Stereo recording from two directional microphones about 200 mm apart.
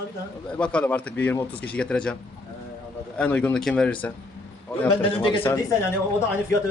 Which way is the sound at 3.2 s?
5° left (ahead or behind).